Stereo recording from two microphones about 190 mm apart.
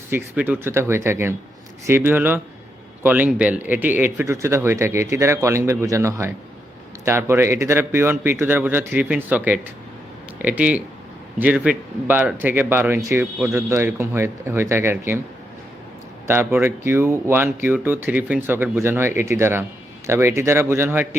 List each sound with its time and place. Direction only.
0.1 s speech: 10° right (ahead or behind)
16.2 s speech: 10° right (ahead or behind)